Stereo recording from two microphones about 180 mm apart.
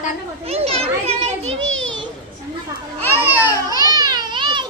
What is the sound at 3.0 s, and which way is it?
Speech, 15° left (ahead or behind).